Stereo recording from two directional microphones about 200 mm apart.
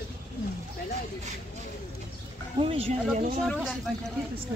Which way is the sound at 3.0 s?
Centre (ahead or behind).